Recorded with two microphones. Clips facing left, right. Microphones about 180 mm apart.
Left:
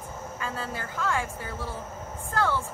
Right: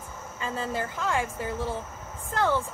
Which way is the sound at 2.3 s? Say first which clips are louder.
Right 2 dB; 20° right (ahead or behind).